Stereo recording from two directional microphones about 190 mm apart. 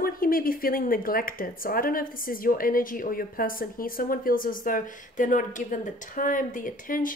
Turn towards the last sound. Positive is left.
turn(degrees=45)  # may be behind; listen again after turning